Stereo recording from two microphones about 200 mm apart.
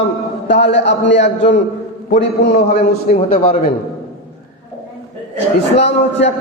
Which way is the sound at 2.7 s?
35° left (ahead or behind).